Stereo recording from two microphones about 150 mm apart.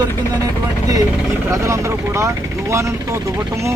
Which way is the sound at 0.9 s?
20° right (ahead or behind).